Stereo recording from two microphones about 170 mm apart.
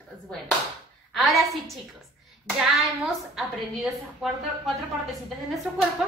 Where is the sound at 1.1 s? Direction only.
Centre (ahead or behind).